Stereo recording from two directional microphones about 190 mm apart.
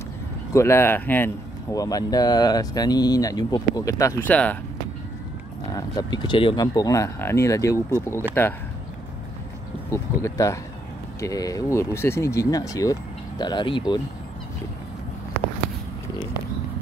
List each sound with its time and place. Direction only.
0.5 s speech: 15° left (ahead or behind)
5.8 s speech: 20° left (ahead or behind)
9.8 s speech: 15° left (ahead or behind)